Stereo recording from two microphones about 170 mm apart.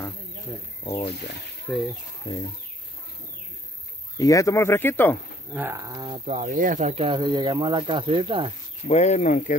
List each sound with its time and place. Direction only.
0.8 s speech: 30° left (ahead or behind)
1.7 s speech: 5° left (ahead or behind)
2.3 s speech: 30° left (ahead or behind)
4.2 s speech: 20° left (ahead or behind)
5.5 s speech: 15° right (ahead or behind)
6.0 s speech: 35° right (ahead or behind)
8.8 s speech: 40° left (ahead or behind)